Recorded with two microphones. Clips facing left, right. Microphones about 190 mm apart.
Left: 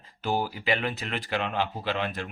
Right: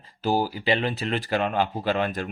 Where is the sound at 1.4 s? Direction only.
45° right (ahead or behind).